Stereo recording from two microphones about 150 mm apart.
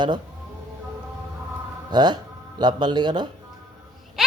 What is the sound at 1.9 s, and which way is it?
Speech, 30° right (ahead or behind).